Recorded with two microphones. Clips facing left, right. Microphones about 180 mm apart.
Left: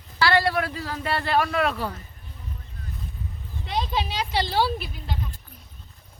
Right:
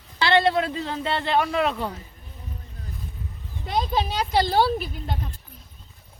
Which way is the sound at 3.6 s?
45° right (ahead or behind).